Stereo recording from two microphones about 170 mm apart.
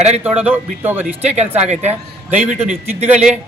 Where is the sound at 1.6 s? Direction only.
40° right (ahead or behind).